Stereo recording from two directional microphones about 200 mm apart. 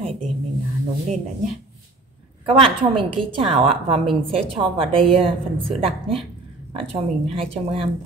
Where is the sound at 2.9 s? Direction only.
25° right (ahead or behind).